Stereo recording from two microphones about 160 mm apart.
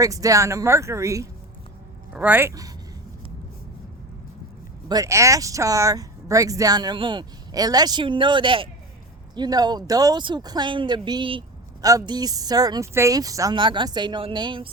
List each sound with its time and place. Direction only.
0.0 s speech: 20° right (ahead or behind)
4.9 s speech: 20° right (ahead or behind)